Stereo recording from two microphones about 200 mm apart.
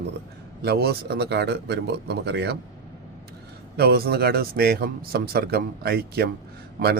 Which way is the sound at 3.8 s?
50° right (ahead or behind).